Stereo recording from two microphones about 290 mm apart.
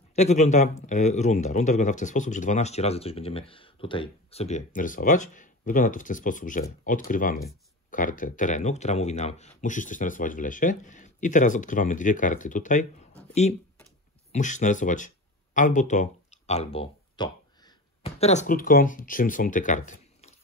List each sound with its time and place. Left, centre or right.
0.1 s speech: left